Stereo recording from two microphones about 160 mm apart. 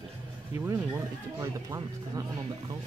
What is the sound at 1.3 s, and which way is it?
Speech, 20° right (ahead or behind).